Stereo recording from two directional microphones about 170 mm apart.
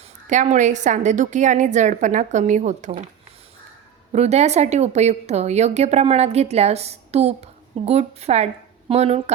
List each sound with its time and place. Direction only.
0.3 s a woman's voice: 45° right (ahead or behind)
4.1 s a woman's voice: 40° right (ahead or behind)